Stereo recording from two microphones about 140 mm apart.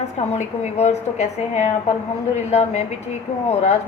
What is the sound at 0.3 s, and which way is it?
A woman's voice, 55° left (ahead or behind).